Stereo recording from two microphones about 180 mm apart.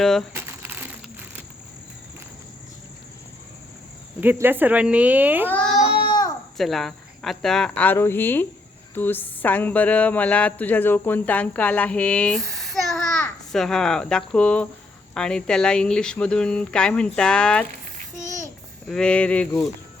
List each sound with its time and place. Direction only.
0.0 s speech: centre (ahead or behind)
0.3 s crumpling: 10° right (ahead or behind)
4.2 s speech: 10° right (ahead or behind)
5.5 s baby cry: 5° left (ahead or behind)
6.1 s a sound: 20° left (ahead or behind)
6.6 s speech: centre (ahead or behind)
18.9 s speech: 5° left (ahead or behind)